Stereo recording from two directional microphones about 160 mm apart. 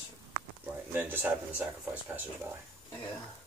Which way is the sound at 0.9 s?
15° right (ahead or behind).